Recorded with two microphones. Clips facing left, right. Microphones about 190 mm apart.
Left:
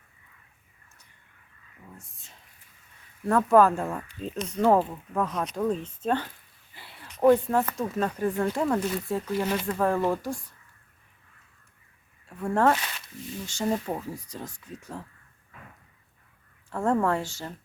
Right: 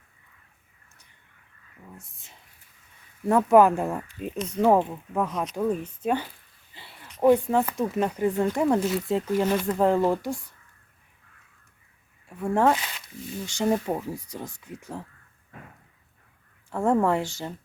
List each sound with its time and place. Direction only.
3.2 s speech: 15° right (ahead or behind)
12.4 s speech: 15° right (ahead or behind)
16.6 s speech: 15° right (ahead or behind)